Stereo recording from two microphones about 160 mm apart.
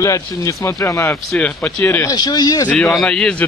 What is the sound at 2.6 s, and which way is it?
Speech, 5° left (ahead or behind).